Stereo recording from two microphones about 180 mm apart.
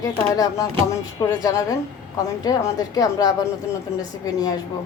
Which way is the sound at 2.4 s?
20° left (ahead or behind).